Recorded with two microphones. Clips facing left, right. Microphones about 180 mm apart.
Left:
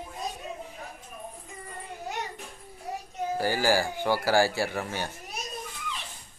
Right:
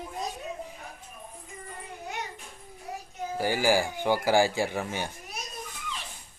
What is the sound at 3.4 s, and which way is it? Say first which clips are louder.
Speech: right 1 dB; 15° right (ahead or behind).